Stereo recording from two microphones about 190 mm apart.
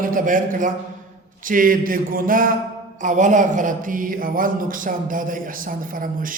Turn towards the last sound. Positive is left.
turn(degrees=-45)  # may be behind; listen again after turning